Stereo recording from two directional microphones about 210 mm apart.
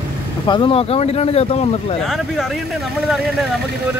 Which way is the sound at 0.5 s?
25° left (ahead or behind).